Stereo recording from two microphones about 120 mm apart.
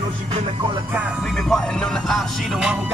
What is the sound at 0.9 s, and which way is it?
Speech, 10° right (ahead or behind).